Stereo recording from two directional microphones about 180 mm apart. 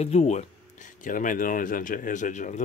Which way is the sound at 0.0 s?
35° left (ahead or behind).